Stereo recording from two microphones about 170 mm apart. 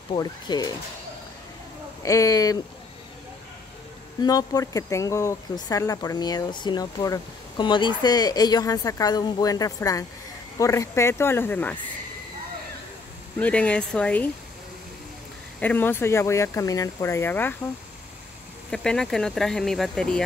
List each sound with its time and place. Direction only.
0.1 s speech: 25° left (ahead or behind)
2.0 s speech: 20° left (ahead or behind)
4.2 s speech: 20° left (ahead or behind)
13.4 s speech: 5° left (ahead or behind)
15.6 s speech: 10° left (ahead or behind)
18.7 s speech: 5° left (ahead or behind)